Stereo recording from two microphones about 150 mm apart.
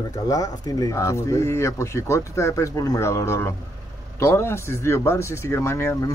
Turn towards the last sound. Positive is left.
turn(degrees=15)  # may be behind; listen again after turning